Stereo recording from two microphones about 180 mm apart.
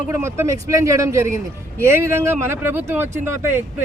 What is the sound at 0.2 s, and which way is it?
Speech, 15° right (ahead or behind).